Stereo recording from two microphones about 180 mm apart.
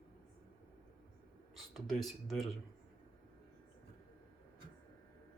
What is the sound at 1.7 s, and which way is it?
Speech, centre (ahead or behind).